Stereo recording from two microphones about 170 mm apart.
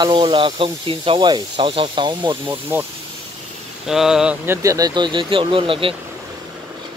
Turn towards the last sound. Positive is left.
turn(degrees=-30)  # may be behind; listen again after turning